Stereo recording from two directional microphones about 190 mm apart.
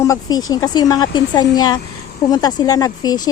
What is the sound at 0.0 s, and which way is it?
A woman's voice, 20° left (ahead or behind).